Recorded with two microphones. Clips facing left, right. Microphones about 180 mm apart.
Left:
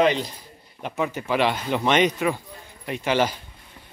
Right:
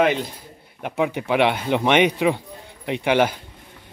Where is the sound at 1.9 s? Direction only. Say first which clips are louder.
Right 2 dB; 65° right (ahead or behind).